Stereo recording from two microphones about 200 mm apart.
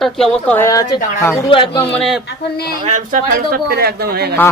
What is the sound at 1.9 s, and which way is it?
Speech, centre (ahead or behind).